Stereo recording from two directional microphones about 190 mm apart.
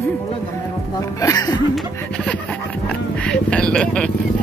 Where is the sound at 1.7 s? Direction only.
5° left (ahead or behind).